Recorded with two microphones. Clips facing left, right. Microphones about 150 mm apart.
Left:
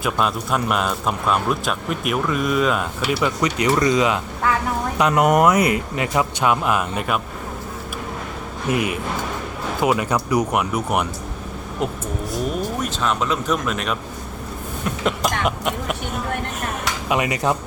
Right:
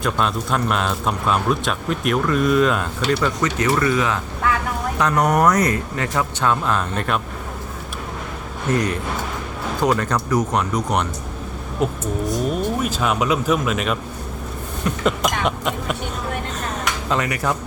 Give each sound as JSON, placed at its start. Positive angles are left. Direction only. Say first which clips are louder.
{"t": 0.0, "sound": "a man's voice", "louder": "even", "side_deg": 5}
{"t": 8.7, "sound": "speech", "louder": "right 1 dB", "side_deg": 10}
{"t": 12.8, "sound": "a man's voice", "louder": "right 2 dB", "side_deg": -10}
{"t": 17.1, "sound": "speech", "louder": "left 2 dB", "side_deg": 20}